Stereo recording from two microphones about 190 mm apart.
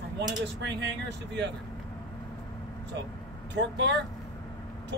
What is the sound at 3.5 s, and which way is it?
Speech, 65° right (ahead or behind).